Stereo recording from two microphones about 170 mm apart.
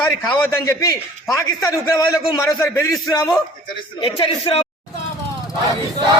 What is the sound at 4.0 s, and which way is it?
Speech, 30° left (ahead or behind).